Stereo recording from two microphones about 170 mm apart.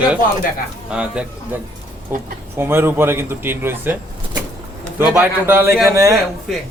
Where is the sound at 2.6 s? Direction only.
15° right (ahead or behind).